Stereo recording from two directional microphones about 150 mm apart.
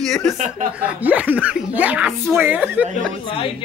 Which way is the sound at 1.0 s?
10° right (ahead or behind).